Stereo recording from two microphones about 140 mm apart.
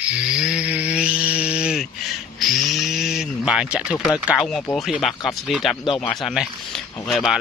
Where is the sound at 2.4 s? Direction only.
Centre (ahead or behind).